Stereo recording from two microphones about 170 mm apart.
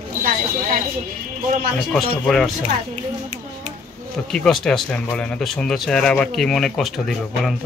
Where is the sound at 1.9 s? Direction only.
5° left (ahead or behind).